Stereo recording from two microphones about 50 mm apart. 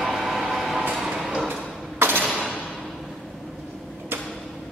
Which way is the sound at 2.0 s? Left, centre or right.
Right.